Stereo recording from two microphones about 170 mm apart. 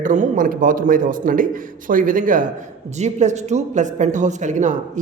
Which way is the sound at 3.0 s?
45° right (ahead or behind).